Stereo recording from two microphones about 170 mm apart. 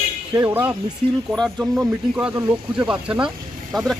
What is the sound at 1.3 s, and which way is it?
Speech, centre (ahead or behind).